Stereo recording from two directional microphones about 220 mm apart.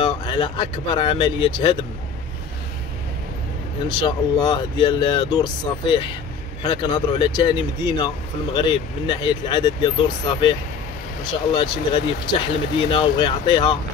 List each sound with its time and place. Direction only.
0.0 s speech: 20° left (ahead or behind)
4.0 s speech: 20° left (ahead or behind)
11.5 s speech: 20° left (ahead or behind)